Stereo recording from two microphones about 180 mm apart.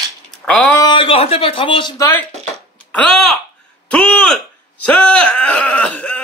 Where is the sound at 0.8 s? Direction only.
25° left (ahead or behind).